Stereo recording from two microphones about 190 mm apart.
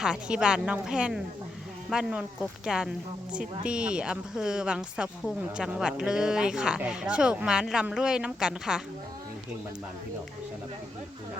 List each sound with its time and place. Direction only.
0.0 s a woman's voice: 5° right (ahead or behind)